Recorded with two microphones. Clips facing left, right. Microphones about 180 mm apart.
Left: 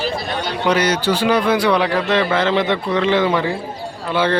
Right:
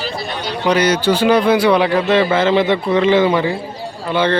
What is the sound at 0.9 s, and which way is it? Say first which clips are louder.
Speech: right 3 dB; 20° right (ahead or behind).